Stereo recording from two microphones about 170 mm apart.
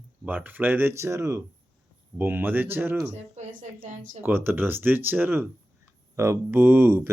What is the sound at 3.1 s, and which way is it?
A woman's voice, 40° right (ahead or behind).